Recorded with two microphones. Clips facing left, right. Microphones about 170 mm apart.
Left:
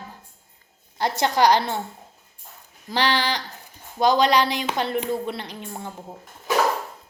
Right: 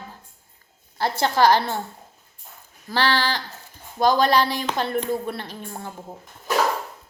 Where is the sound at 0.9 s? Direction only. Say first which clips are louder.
Even; 20° left (ahead or behind).